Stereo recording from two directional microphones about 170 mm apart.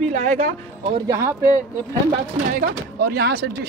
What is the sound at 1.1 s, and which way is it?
Speech, 15° right (ahead or behind).